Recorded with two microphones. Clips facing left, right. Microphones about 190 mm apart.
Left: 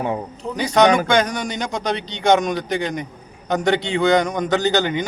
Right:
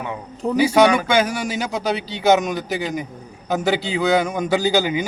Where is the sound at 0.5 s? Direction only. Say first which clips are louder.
Right 1 dB; 10° right (ahead or behind).